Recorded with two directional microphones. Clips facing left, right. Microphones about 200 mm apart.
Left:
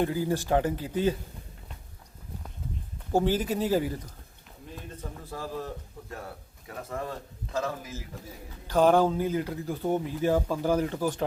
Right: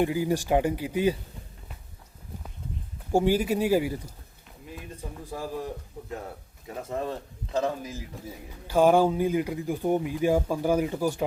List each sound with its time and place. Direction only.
0.0 s speech: 15° right (ahead or behind)
3.1 s speech: 10° right (ahead or behind)
4.7 s a sound: 15° right (ahead or behind)
7.5 s speech: 20° right (ahead or behind)